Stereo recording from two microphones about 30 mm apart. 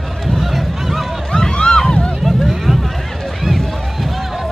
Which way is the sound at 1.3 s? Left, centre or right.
Left.